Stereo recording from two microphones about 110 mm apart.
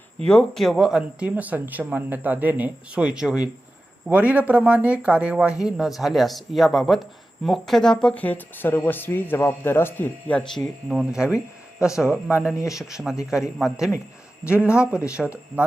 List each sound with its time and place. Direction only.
0.3 s speech: 5° left (ahead or behind)
10.8 s a man's voice: 5° right (ahead or behind)
12.5 s speech: 30° left (ahead or behind)
12.9 s speech: 5° right (ahead or behind)